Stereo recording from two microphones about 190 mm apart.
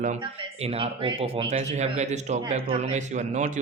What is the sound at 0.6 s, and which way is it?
Speech, 30° right (ahead or behind).